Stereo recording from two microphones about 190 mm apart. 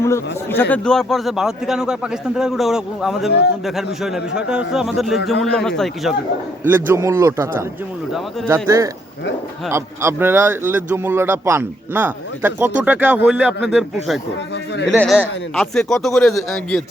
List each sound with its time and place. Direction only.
0.0 s a man's voice: 15° left (ahead or behind)
0.7 s speech: 5° left (ahead or behind)
6.7 s a man's voice: 10° right (ahead or behind)